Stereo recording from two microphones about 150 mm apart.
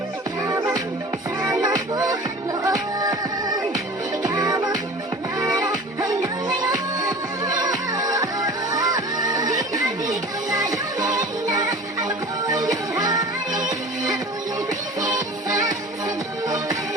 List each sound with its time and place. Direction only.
0.4 s music: 20° right (ahead or behind)